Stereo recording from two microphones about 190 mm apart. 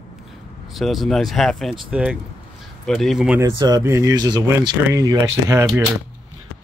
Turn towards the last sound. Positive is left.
turn(degrees=-15)  # may be behind; listen again after turning